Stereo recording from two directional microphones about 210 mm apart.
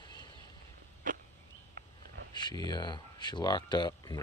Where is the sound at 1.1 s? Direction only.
40° right (ahead or behind).